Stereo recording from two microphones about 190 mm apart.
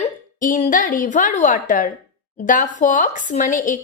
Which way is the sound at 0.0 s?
40° left (ahead or behind).